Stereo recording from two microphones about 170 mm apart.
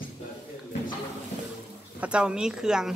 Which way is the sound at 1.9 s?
5° right (ahead or behind).